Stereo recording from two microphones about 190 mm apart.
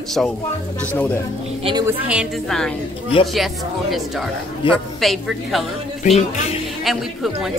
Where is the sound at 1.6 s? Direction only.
25° right (ahead or behind).